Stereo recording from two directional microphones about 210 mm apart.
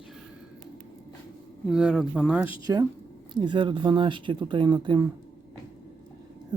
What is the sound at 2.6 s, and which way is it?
Speech, 15° right (ahead or behind).